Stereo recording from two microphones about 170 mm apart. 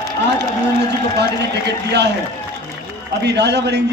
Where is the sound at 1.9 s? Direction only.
80° right.